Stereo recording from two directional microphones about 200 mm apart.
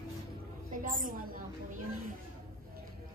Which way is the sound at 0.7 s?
45° right (ahead or behind).